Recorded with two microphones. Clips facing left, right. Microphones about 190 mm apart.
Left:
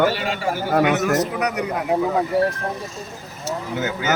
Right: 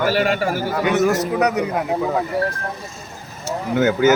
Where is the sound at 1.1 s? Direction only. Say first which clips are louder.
Right 2 dB; 30° right (ahead or behind).